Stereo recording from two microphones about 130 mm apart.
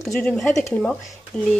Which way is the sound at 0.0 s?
5° left (ahead or behind).